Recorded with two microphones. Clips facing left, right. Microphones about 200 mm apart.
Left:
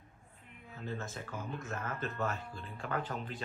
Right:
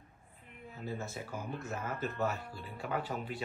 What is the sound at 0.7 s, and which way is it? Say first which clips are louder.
Speech: right 1 dB; 10° right (ahead or behind).